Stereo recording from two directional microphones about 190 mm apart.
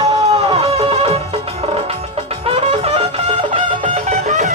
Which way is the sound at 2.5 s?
30° right (ahead or behind).